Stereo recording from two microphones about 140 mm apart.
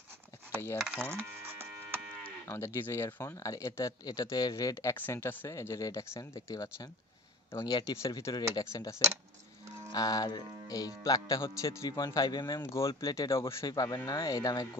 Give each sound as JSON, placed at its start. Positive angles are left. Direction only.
{"t": 1.1, "sound": "cattle", "side_deg": -15}
{"t": 2.4, "sound": "speech", "side_deg": 20}